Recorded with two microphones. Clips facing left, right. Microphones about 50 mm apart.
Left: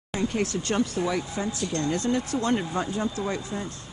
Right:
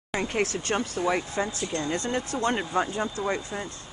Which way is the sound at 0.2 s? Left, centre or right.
Right.